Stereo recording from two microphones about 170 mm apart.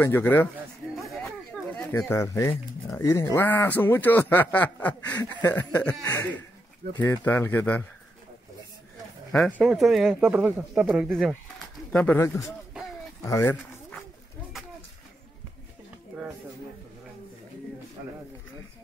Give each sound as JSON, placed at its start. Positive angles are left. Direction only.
{"t": 0.0, "sound": "a man's voice", "side_deg": 10}
{"t": 1.8, "sound": "a man's voice", "side_deg": 15}
{"t": 9.3, "sound": "a man's voice", "side_deg": 0}